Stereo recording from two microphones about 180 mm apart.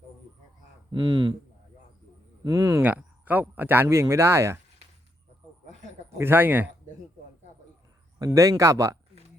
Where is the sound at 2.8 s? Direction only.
10° right (ahead or behind).